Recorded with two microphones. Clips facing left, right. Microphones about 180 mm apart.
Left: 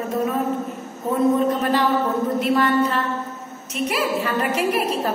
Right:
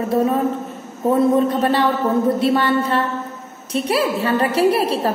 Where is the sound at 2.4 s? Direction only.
30° right (ahead or behind).